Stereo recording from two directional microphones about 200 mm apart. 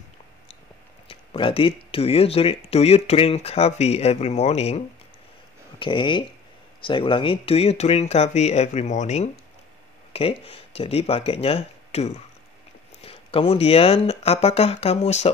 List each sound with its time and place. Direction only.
1.0 s speech: 25° left (ahead or behind)